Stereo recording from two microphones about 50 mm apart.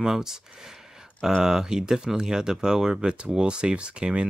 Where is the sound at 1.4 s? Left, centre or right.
Centre.